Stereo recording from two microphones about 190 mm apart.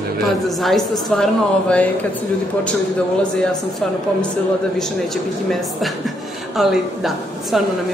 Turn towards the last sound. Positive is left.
turn(degrees=0)  # may be behind; listen again after turning